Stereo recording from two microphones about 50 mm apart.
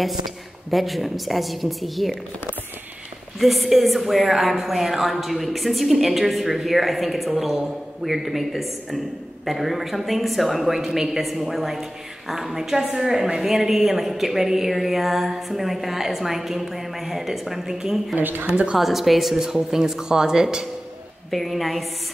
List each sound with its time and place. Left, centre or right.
0.7 s a woman's voice: centre
3.3 s a woman's voice: centre
18.1 s a woman's voice: right
18.8 s speech: centre
21.3 s a woman's voice: centre